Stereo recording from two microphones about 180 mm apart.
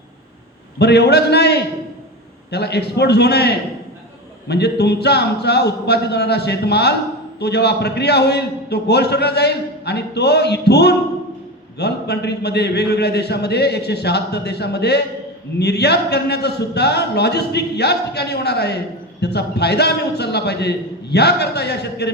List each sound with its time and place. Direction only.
0.8 s a man's voice: 65° left (ahead or behind)